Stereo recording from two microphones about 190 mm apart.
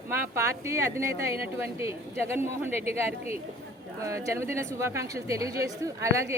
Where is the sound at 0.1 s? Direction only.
15° right (ahead or behind).